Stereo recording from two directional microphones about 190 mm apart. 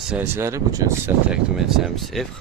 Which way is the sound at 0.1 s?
10° right (ahead or behind).